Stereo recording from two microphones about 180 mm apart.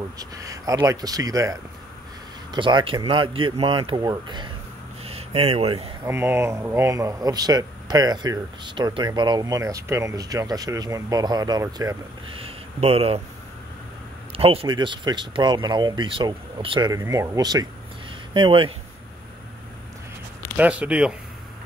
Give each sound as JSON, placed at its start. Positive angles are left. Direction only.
{"t": 0.2, "sound": "speech", "side_deg": -20}
{"t": 5.0, "sound": "a sound", "side_deg": -35}
{"t": 6.0, "sound": "speech", "side_deg": -15}
{"t": 12.4, "sound": "speech", "side_deg": -30}
{"t": 14.3, "sound": "speech", "side_deg": -30}
{"t": 20.5, "sound": "speech", "side_deg": -5}